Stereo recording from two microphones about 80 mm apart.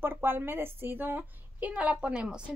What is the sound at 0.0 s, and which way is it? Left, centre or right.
A woman's voice, right.